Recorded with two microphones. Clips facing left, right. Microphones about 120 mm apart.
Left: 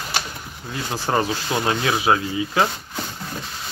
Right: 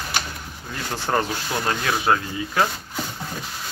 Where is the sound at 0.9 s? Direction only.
5° left (ahead or behind).